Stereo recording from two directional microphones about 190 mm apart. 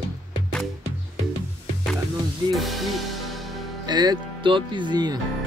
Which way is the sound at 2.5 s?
Centre (ahead or behind).